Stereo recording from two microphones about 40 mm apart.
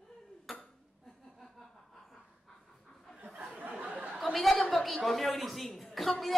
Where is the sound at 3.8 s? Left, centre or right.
Right.